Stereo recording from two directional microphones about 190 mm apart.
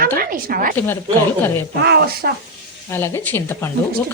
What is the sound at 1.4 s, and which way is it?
Speech, 10° left (ahead or behind).